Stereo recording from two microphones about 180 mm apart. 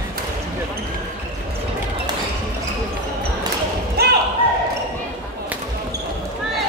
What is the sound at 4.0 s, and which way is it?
Basketball bounce, 60° right (ahead or behind).